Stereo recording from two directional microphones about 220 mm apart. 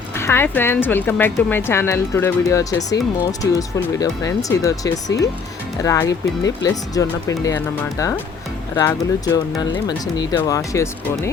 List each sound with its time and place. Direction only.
0.2 s speech: 10° left (ahead or behind)
4.0 s speech: 15° left (ahead or behind)